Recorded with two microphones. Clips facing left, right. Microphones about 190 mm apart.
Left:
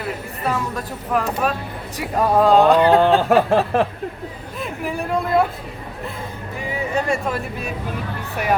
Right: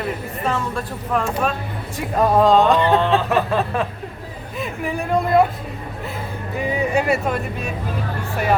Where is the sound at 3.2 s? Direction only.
50° left (ahead or behind).